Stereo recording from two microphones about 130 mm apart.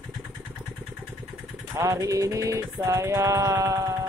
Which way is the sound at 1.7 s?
25° right (ahead or behind).